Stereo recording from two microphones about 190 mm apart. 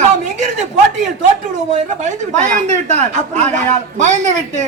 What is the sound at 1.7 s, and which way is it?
Speech, 40° right (ahead or behind).